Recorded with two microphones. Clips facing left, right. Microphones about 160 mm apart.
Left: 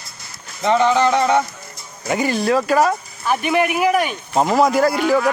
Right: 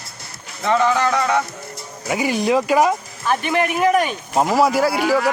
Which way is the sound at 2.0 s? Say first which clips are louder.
Left 1 dB; 5° right (ahead or behind).